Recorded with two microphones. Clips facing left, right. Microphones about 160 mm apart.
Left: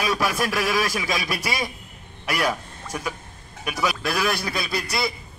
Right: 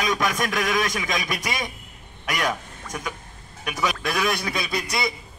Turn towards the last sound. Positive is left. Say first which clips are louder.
# even
turn(degrees=5)  # may be behind; listen again after turning